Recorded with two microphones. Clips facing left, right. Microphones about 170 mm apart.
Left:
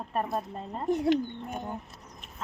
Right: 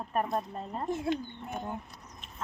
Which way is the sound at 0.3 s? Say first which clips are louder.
Even; centre (ahead or behind).